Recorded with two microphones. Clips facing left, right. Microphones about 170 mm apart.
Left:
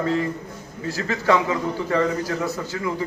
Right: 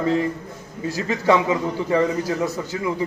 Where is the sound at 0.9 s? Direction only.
20° right (ahead or behind).